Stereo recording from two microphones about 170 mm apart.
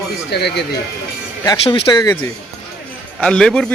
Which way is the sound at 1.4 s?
20° left (ahead or behind).